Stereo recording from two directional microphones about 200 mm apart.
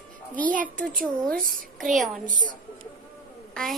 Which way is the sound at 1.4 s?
45° right (ahead or behind).